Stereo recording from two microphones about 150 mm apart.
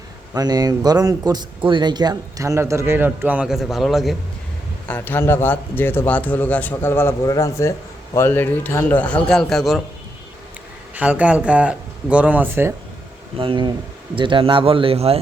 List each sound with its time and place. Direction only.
0.3 s speech: 25° right (ahead or behind); by 4.1 s centre (ahead or behind)
4.9 s a man's voice: 15° left (ahead or behind)
10.9 s speech: 10° right (ahead or behind)
13.3 s speech: 35° right (ahead or behind)